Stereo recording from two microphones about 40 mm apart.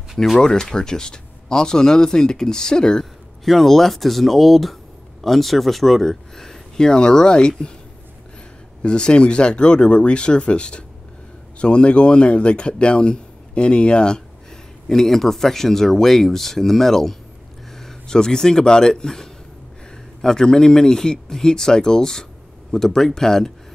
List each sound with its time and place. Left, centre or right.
0.4 s speech: centre
3.4 s speech: centre; by 7.7 s left
8.8 s speech: left
14.9 s a man's voice: centre